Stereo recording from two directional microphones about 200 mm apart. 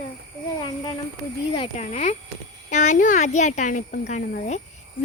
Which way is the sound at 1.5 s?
25° left (ahead or behind).